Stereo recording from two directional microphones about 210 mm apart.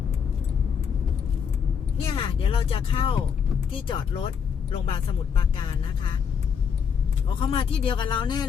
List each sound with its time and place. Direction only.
2.1 s speech: 25° left (ahead or behind)
7.3 s speech: 25° left (ahead or behind)